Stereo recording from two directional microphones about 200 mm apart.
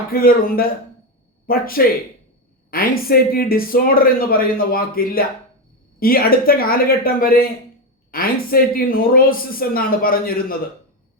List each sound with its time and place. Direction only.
0.1 s speech: 45° left (ahead or behind)